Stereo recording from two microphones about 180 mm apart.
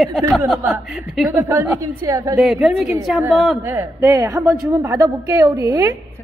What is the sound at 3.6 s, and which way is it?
A woman's voice, 15° right (ahead or behind).